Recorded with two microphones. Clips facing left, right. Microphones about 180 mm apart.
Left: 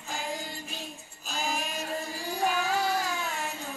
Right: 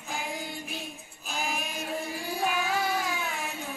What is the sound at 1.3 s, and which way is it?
Music, 60° right (ahead or behind).